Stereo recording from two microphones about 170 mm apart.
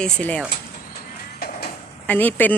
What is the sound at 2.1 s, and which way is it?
Speech, 10° left (ahead or behind).